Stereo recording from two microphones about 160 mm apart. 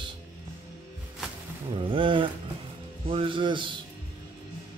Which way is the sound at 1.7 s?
30° right (ahead or behind).